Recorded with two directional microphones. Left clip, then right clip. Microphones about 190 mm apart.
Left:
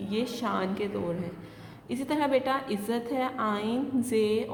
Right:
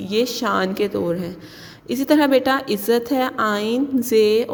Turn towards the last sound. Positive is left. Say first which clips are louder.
# right 11 dB
turn(degrees=-35)  # may be behind; listen again after turning